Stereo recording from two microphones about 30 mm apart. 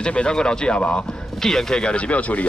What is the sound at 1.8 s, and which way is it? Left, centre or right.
Speech, left.